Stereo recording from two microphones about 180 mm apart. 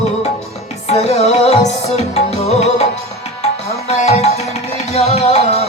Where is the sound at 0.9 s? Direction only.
35° left (ahead or behind).